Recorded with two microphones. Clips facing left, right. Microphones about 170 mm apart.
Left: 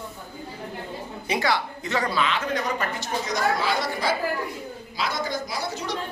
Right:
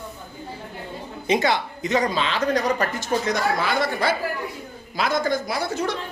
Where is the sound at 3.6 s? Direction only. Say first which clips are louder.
Right 3 dB; 55° right (ahead or behind).